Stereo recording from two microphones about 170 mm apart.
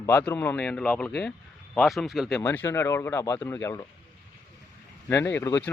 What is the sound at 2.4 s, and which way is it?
Speech, 10° left (ahead or behind).